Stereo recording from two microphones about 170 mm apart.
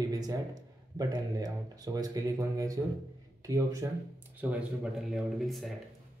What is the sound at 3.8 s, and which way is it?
Speech, 20° right (ahead or behind).